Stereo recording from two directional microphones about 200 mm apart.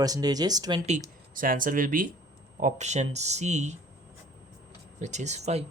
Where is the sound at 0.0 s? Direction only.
20° right (ahead or behind).